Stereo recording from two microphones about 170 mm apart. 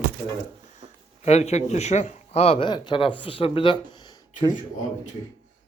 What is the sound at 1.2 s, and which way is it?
Speech, 40° left (ahead or behind).